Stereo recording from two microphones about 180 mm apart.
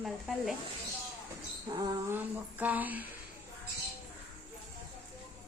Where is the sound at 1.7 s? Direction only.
20° right (ahead or behind).